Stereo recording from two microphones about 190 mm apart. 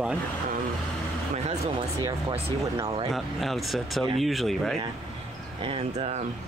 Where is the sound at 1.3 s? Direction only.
35° right (ahead or behind).